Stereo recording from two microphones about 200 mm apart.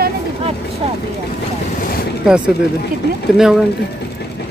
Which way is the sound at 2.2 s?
5° right (ahead or behind).